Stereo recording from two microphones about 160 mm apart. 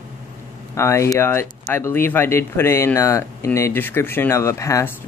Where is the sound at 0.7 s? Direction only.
15° left (ahead or behind).